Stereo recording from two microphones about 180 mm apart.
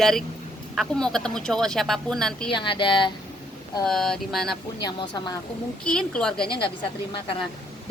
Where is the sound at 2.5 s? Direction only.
25° left (ahead or behind).